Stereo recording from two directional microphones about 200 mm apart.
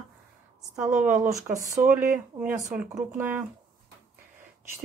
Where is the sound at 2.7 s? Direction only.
5° right (ahead or behind).